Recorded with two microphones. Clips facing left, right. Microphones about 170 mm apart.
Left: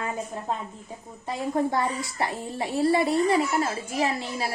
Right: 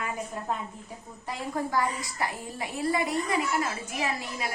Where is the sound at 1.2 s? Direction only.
25° left (ahead or behind).